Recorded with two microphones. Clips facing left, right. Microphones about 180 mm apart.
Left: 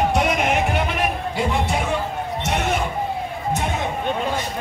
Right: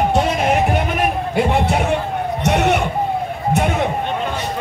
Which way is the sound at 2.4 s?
70° right (ahead or behind).